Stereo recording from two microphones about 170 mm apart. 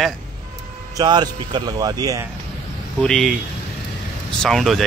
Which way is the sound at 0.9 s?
25° right (ahead or behind).